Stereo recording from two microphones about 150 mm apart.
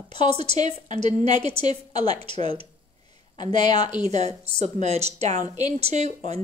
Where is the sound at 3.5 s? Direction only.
30° left (ahead or behind).